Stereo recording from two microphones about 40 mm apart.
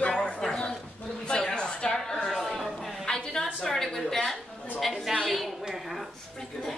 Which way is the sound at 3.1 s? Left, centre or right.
Centre.